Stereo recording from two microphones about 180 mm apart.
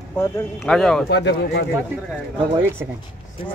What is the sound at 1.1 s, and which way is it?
Speech, 70° left (ahead or behind).